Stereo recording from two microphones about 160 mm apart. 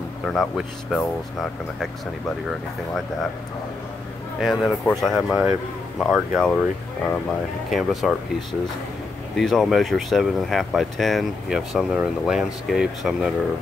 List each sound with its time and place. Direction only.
0.3 s speech: centre (ahead or behind)
4.4 s speech: centre (ahead or behind)
9.4 s speech: centre (ahead or behind)